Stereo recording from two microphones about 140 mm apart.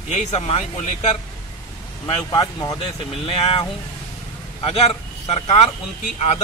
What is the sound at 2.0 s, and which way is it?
Speech, 30° left (ahead or behind).